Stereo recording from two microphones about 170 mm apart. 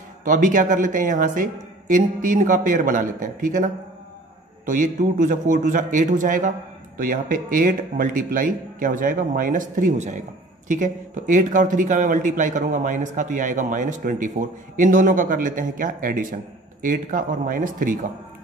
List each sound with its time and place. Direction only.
0.2 s speech: 50° right (ahead or behind)